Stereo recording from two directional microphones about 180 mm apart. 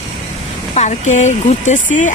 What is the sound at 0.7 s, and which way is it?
A woman's voice, 40° left (ahead or behind).